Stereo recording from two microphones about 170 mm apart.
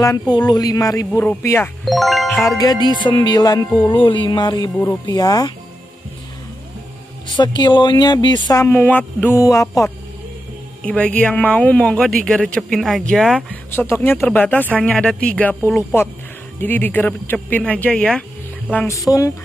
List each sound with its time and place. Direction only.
0.0 s speech: 20° left (ahead or behind)
1.9 s speech: centre (ahead or behind)
2.2 s speech: 15° left (ahead or behind)
7.3 s speech: 25° left (ahead or behind)
10.8 s speech: 5° left (ahead or behind)
16.6 s speech: 10° left (ahead or behind)